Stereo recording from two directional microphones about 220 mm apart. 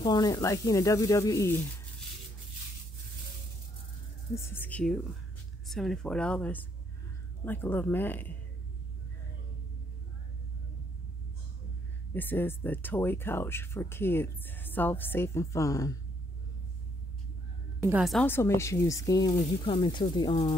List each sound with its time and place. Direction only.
0.0 s speech: 20° left (ahead or behind)
4.6 s speech: 5° left (ahead or behind)
12.1 s speech: 10° left (ahead or behind)
17.8 s speech: 5° right (ahead or behind); by 20.5 s 20° left (ahead or behind)